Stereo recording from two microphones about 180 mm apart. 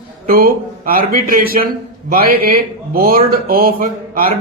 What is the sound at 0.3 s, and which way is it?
Speech, 55° right (ahead or behind).